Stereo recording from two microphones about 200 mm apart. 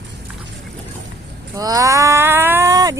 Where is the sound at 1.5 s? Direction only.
20° right (ahead or behind).